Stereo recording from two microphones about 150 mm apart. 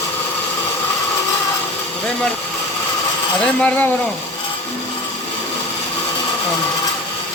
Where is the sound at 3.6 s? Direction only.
10° left (ahead or behind).